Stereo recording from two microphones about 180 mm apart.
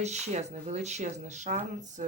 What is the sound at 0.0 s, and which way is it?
Speech, 40° right (ahead or behind).